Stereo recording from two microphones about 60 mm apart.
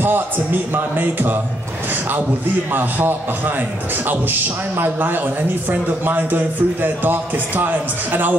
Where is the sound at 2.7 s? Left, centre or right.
Right.